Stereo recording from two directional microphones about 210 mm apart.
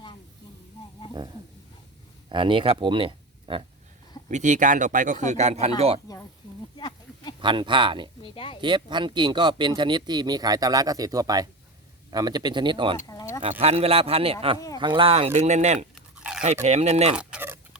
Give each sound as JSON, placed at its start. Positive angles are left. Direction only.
{"t": 2.3, "sound": "speech", "side_deg": -25}
{"t": 4.3, "sound": "speech", "side_deg": -35}
{"t": 6.1, "sound": "a sound", "side_deg": 15}
{"t": 7.4, "sound": "speech", "side_deg": -20}
{"t": 8.2, "sound": "speech", "side_deg": 25}
{"t": 8.6, "sound": "speech", "side_deg": -20}
{"t": 13.1, "sound": "a sound", "side_deg": 15}
{"t": 13.6, "sound": "speech", "side_deg": -30}
{"t": 16.0, "sound": "dog", "side_deg": -5}
{"t": 16.6, "sound": "speech", "side_deg": -30}
{"t": 17.2, "sound": "fowl", "side_deg": -10}